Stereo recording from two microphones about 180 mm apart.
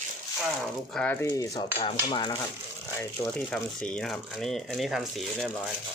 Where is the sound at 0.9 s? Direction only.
10° left (ahead or behind).